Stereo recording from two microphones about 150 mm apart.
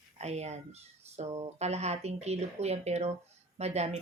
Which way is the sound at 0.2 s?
45° right (ahead or behind).